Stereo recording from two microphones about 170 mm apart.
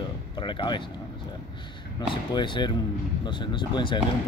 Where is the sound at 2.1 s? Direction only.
25° left (ahead or behind).